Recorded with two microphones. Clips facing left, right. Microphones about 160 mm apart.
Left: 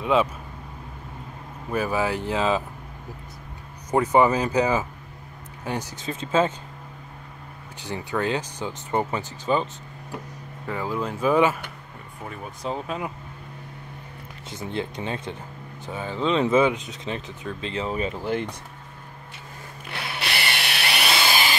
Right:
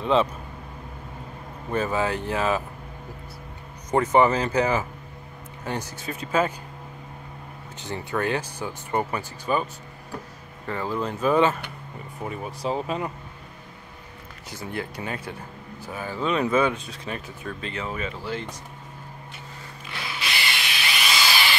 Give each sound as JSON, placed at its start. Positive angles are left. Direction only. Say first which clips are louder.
{"t": 0.0, "sound": "speech", "louder": "even", "side_deg": 5}
{"t": 1.7, "sound": "speech", "louder": "even", "side_deg": 10}
{"t": 3.9, "sound": "speech", "louder": "even", "side_deg": 10}
{"t": 6.1, "sound": "speech", "louder": "left 2 dB", "side_deg": 25}
{"t": 7.8, "sound": "speech", "louder": "left 1 dB", "side_deg": 15}
{"t": 10.7, "sound": "speech", "louder": "even", "side_deg": 5}
{"t": 12.2, "sound": "speech", "louder": "right 4 dB", "side_deg": -5}
{"t": 14.5, "sound": "speech", "louder": "left 2 dB", "side_deg": 20}
{"t": 19.9, "sound": "a sound", "louder": "left 2 dB", "side_deg": 65}